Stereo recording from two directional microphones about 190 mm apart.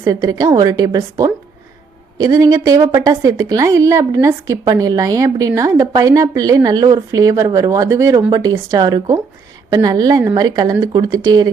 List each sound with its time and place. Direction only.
0.0 s a woman's voice: 20° right (ahead or behind)